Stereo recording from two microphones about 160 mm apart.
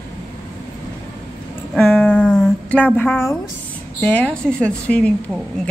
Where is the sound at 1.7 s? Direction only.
5° left (ahead or behind).